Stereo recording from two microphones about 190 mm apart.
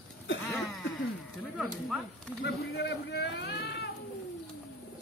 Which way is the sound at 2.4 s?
65° left (ahead or behind).